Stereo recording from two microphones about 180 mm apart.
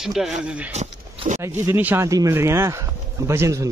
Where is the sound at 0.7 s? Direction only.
40° right (ahead or behind).